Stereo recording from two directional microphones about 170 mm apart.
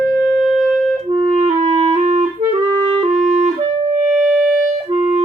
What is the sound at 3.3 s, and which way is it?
Music, 40° right (ahead or behind).